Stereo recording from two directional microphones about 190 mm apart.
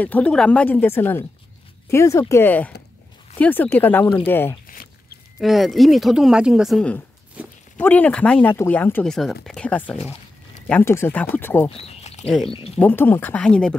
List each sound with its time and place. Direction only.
0.0 s speech: 5° left (ahead or behind)
4.6 s a sound: 50° left (ahead or behind)
5.4 s speech: centre (ahead or behind)
7.7 s speech: 10° left (ahead or behind)
11.7 s a sound: 35° left (ahead or behind)
12.3 s speech: 5° left (ahead or behind)